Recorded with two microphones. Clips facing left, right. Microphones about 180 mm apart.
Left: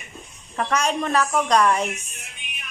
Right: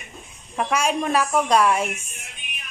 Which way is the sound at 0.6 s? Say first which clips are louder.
Right 1 dB; 10° right (ahead or behind).